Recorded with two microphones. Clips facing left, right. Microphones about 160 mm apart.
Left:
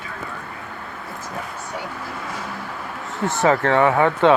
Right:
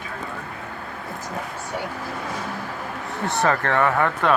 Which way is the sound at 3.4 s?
20° left (ahead or behind).